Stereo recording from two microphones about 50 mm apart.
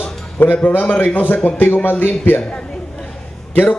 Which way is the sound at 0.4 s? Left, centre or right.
Left.